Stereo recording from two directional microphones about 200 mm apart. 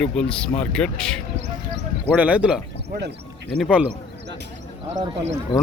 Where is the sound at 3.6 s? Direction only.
5° right (ahead or behind).